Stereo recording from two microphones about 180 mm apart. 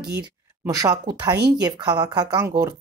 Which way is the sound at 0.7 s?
20° right (ahead or behind).